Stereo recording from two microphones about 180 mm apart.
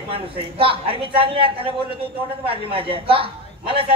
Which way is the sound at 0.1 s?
30° right (ahead or behind).